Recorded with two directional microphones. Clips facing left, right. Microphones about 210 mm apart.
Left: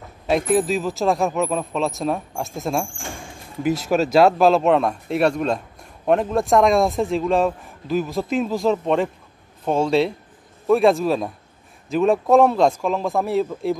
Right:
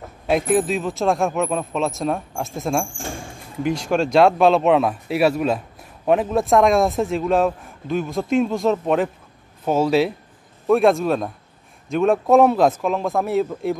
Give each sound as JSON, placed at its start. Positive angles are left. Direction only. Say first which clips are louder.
{"t": 0.3, "sound": "speech", "louder": "even", "side_deg": 0}